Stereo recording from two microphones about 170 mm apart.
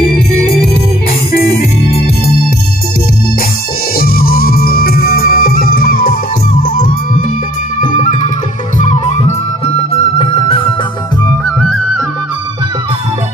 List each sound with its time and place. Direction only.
4.0 s music: 60° left (ahead or behind); by 10.7 s 30° left (ahead or behind)